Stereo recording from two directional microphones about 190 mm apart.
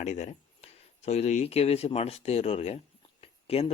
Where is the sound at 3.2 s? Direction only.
30° left (ahead or behind).